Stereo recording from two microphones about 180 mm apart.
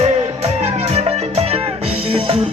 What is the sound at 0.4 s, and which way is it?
Music, 35° right (ahead or behind).